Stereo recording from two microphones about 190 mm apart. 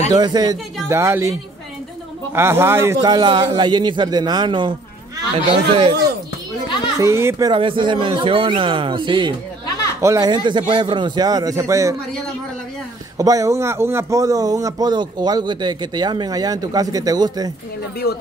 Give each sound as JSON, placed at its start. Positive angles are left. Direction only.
{"t": 0.1, "sound": "a man's voice", "side_deg": -20}
{"t": 2.3, "sound": "a man's voice", "side_deg": -15}
{"t": 7.0, "sound": "a man's voice", "side_deg": -15}
{"t": 13.2, "sound": "a man's voice", "side_deg": -15}